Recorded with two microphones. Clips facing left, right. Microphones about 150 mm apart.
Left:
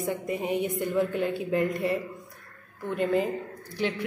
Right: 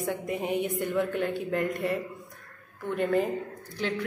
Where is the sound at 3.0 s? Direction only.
5° left (ahead or behind).